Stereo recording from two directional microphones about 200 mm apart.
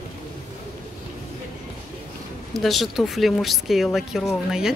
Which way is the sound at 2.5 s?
Centre (ahead or behind).